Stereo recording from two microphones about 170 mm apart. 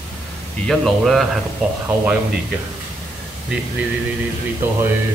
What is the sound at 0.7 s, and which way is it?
Speech, centre (ahead or behind).